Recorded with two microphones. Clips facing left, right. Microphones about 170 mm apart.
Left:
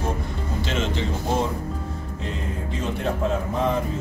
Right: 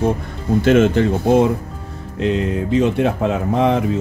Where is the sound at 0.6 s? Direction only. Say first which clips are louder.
Right 14 dB; 55° right (ahead or behind).